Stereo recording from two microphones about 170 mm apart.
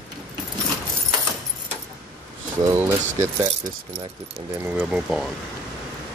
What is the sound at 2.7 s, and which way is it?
Speech, 15° right (ahead or behind).